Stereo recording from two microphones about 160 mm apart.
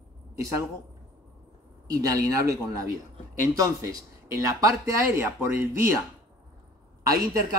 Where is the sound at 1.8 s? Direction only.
20° right (ahead or behind).